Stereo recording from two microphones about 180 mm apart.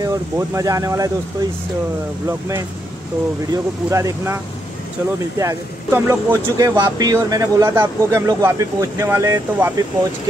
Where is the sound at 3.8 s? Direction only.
15° right (ahead or behind).